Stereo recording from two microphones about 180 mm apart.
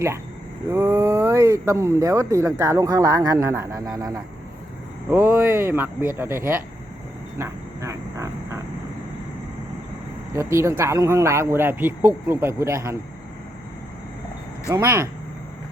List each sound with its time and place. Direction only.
0.7 s speech: 15° right (ahead or behind)
7.3 s a sound: 15° right (ahead or behind)
10.3 s speech: 15° right (ahead or behind)
14.7 s speech: 15° right (ahead or behind)